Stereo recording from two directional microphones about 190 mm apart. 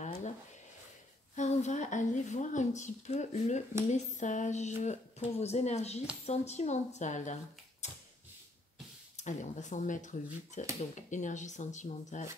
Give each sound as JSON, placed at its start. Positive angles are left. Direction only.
{"t": 0.0, "sound": "a sound", "side_deg": 40}
{"t": 1.3, "sound": "a woman's voice", "side_deg": 40}
{"t": 9.1, "sound": "a woman's voice", "side_deg": 40}